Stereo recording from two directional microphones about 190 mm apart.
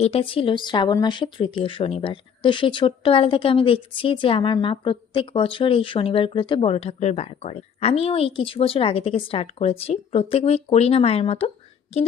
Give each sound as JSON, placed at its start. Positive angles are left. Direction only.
{"t": 0.0, "sound": "speech", "side_deg": 30}